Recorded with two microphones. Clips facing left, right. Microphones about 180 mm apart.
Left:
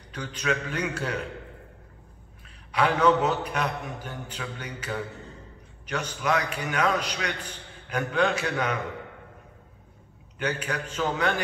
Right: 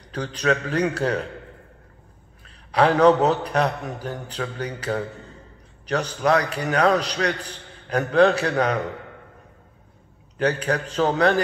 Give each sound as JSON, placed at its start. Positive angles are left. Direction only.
{"t": 0.1, "sound": "a man's voice", "side_deg": -35}
{"t": 2.4, "sound": "a man's voice", "side_deg": -35}
{"t": 10.3, "sound": "a man's voice", "side_deg": -35}